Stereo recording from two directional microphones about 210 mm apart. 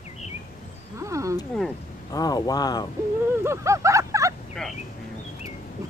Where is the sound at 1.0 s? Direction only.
15° right (ahead or behind).